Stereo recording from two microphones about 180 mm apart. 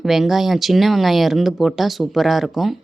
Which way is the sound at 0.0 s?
Centre (ahead or behind).